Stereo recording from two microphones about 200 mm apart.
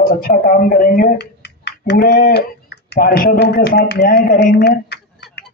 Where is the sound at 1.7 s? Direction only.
60° left (ahead or behind).